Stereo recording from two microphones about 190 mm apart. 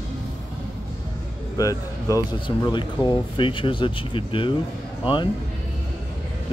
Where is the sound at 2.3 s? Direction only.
25° left (ahead or behind).